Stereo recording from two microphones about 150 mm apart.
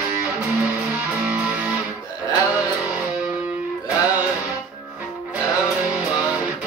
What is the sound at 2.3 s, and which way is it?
Music, 20° left (ahead or behind).